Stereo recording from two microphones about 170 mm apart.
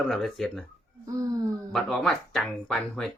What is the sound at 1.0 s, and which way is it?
Music, 20° right (ahead or behind).